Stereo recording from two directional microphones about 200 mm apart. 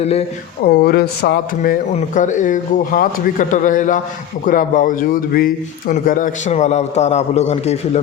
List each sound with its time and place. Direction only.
0.0 s speech: 30° left (ahead or behind)
0.6 s speech: 55° left (ahead or behind)
1.9 s speech: 35° left (ahead or behind)